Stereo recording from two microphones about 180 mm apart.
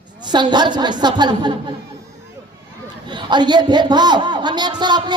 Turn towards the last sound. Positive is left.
turn(degrees=-25)  # may be behind; listen again after turning